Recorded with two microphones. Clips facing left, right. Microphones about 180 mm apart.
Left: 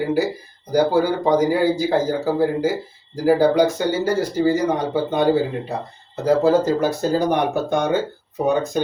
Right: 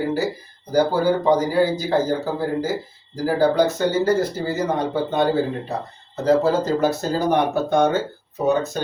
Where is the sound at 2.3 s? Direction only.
10° left (ahead or behind).